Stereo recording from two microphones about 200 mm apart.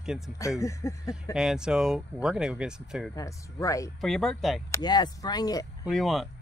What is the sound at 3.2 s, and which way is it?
Speech, 15° left (ahead or behind).